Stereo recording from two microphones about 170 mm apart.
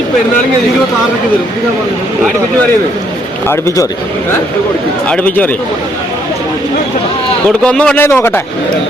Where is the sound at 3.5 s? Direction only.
15° left (ahead or behind).